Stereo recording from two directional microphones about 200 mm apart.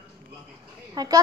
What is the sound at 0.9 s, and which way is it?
Speech, 20° right (ahead or behind).